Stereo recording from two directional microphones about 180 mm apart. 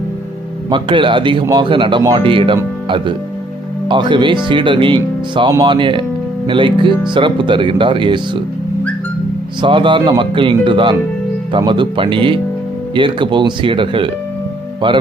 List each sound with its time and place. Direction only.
0.7 s a man's voice: 25° right (ahead or behind)
3.8 s a man's voice: 25° right (ahead or behind)
9.6 s a man's voice: 25° right (ahead or behind)